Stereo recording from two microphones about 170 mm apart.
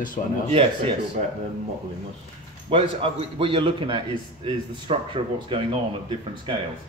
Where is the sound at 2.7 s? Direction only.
35° right (ahead or behind).